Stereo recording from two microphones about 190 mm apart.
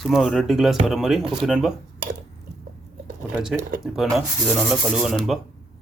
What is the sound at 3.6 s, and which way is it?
Speech, 45° right (ahead or behind).